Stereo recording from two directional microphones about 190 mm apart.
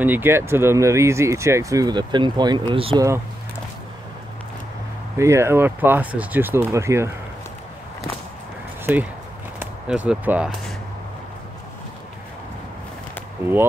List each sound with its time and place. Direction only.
0.0 s speech: 10° right (ahead or behind); by 3.1 s 25° right (ahead or behind)
5.1 s speech: 15° right (ahead or behind)
9.6 s speech: 5° right (ahead or behind)